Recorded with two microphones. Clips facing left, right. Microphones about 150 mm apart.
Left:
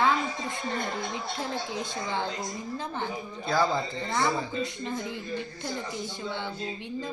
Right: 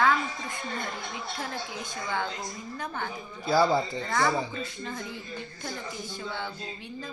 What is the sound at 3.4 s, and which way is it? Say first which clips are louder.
Speech: right 3 dB; 10° right (ahead or behind).